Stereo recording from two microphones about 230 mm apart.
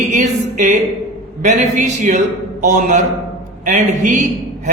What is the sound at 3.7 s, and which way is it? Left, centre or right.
A man's voice, right.